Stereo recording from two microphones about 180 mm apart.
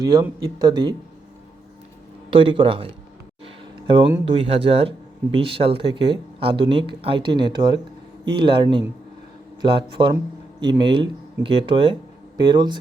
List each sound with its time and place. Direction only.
0.0 s speech: 20° right (ahead or behind)
2.3 s speech: 30° right (ahead or behind)
3.4 s music: 30° right (ahead or behind)
4.4 s speech: 30° right (ahead or behind)